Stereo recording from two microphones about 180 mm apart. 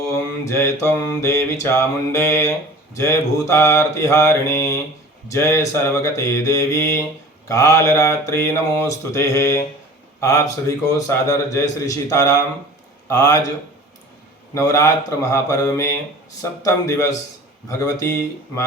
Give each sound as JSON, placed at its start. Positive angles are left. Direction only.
{"t": 0.1, "sound": "mantra", "side_deg": 15}
{"t": 10.2, "sound": "a man's voice", "side_deg": 15}
{"t": 10.9, "sound": "mantra", "side_deg": 15}
{"t": 14.5, "sound": "mantra", "side_deg": 15}